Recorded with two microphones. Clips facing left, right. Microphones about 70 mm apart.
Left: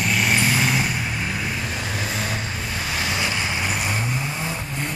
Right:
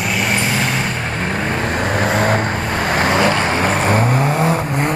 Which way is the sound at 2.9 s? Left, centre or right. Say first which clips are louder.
Right 11 dB; right.